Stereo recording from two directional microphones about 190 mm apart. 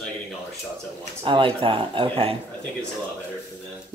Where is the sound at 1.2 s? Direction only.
25° right (ahead or behind).